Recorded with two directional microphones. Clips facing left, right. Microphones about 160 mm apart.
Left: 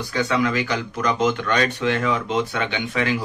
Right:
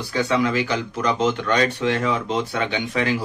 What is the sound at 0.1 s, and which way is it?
Speech, 30° right (ahead or behind).